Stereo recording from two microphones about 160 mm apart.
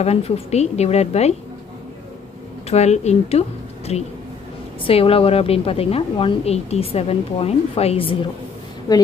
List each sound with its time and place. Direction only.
0.0 s a woman's voice: 40° left (ahead or behind)
2.7 s a woman's voice: 45° left (ahead or behind)